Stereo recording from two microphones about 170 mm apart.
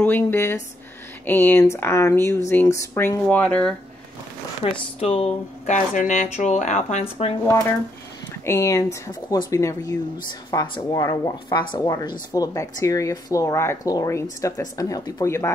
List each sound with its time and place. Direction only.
0.0 s speech: 10° left (ahead or behind)
4.6 s speech: 30° left (ahead or behind)
8.5 s speech: 15° left (ahead or behind)